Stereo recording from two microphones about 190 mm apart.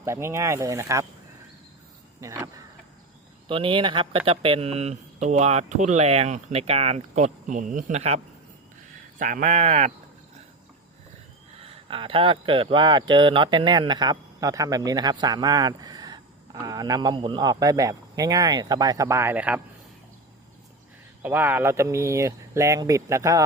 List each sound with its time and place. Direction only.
0.0 s speech: 15° right (ahead or behind)
2.2 s speech: 10° right (ahead or behind)
3.5 s speech: 25° right (ahead or behind)
11.6 s speech: 30° right (ahead or behind); by 19.6 s 10° right (ahead or behind)
21.2 s speech: 10° right (ahead or behind)